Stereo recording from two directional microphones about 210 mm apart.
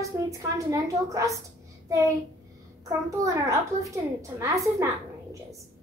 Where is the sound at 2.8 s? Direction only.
15° right (ahead or behind).